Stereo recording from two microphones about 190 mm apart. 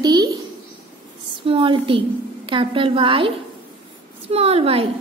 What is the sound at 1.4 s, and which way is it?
A woman's voice, 25° right (ahead or behind).